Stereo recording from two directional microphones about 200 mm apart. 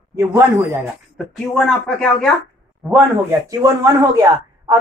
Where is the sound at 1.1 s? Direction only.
Centre (ahead or behind).